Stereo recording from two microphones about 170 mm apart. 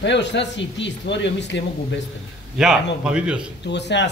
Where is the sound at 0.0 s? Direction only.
90° left.